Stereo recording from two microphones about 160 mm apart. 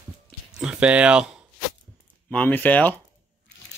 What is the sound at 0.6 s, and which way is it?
Speech, 5° right (ahead or behind).